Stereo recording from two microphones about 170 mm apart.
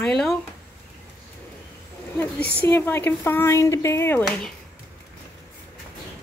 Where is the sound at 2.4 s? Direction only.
70° left (ahead or behind).